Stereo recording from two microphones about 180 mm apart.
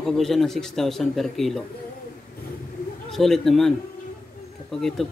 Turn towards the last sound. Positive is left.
turn(degrees=0)  # may be behind; listen again after turning